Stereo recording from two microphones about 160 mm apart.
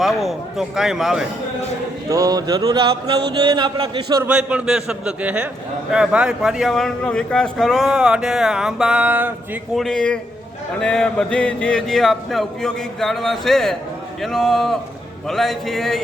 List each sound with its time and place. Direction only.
0.0 s speech: centre (ahead or behind)
2.0 s speech: 20° right (ahead or behind)
4.3 s a man's voice: 10° right (ahead or behind)
9.7 s speech: 5° left (ahead or behind)